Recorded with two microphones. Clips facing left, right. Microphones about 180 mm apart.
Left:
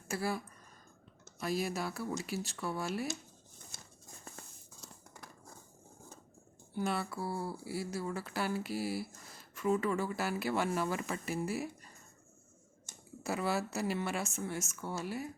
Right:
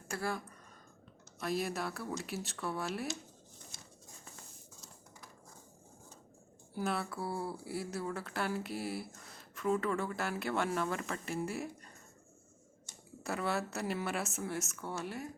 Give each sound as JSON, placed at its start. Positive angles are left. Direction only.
{"t": 0.1, "sound": "speech", "side_deg": 5}
{"t": 6.7, "sound": "speech", "side_deg": 0}
{"t": 12.9, "sound": "a sound", "side_deg": 50}
{"t": 13.2, "sound": "speech", "side_deg": 5}